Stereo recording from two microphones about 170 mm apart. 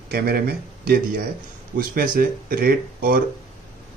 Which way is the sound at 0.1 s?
65° right (ahead or behind).